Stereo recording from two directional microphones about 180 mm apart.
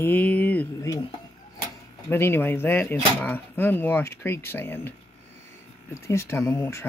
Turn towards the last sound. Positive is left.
turn(degrees=15)  # may be behind; listen again after turning